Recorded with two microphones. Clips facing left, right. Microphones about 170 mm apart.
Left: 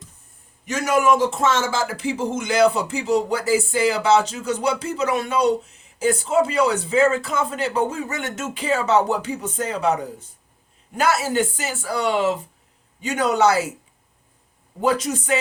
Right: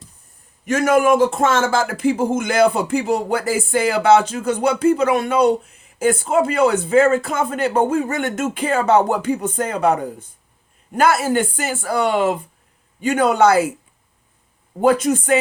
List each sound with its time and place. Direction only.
0.6 s a man's voice: 55° right (ahead or behind)
14.8 s a man's voice: 50° right (ahead or behind)